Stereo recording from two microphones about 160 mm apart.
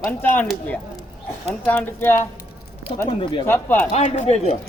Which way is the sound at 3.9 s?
45° left (ahead or behind).